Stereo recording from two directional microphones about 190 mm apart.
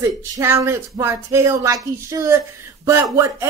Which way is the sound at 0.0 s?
15° right (ahead or behind).